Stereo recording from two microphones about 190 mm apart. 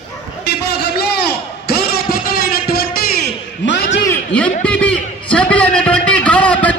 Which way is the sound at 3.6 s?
65° left (ahead or behind).